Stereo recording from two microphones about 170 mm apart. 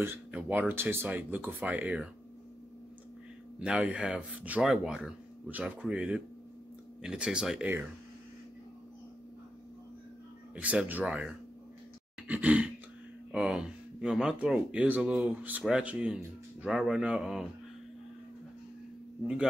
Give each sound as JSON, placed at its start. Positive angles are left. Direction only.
{"t": 0.0, "sound": "speech", "side_deg": -10}
{"t": 3.5, "sound": "speech", "side_deg": -5}
{"t": 10.5, "sound": "speech", "side_deg": -10}